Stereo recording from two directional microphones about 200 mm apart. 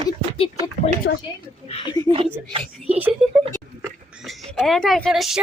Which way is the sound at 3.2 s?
5° right (ahead or behind).